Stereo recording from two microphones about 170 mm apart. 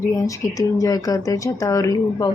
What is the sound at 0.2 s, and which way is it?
Speech, 20° left (ahead or behind).